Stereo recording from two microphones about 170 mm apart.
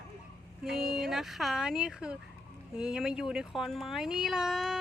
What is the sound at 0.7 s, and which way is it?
Speech, 5° right (ahead or behind).